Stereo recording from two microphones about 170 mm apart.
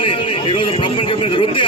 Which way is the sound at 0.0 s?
30° left (ahead or behind).